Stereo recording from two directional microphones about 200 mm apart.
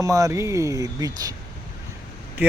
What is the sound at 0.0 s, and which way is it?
Speech, 15° right (ahead or behind).